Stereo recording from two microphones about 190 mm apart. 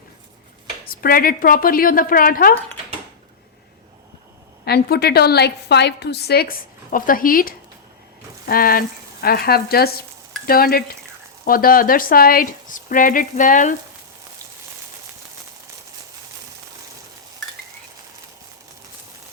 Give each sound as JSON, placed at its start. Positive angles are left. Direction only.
{"t": 0.9, "sound": "speech", "side_deg": 50}
{"t": 4.6, "sound": "a woman's voice", "side_deg": 55}